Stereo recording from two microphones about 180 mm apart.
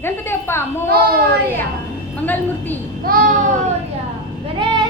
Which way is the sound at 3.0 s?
55° right (ahead or behind).